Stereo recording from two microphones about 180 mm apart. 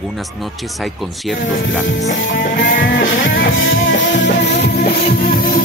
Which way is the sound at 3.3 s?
90° left.